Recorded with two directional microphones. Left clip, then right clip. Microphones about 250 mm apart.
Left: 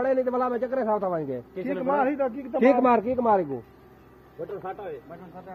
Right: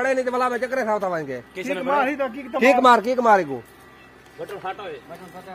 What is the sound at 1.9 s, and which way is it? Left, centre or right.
Speech, left.